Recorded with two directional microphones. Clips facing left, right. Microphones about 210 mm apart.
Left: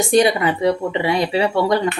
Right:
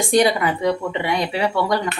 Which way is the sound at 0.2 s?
25° left (ahead or behind).